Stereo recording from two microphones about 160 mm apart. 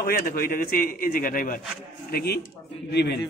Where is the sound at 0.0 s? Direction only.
65° left (ahead or behind).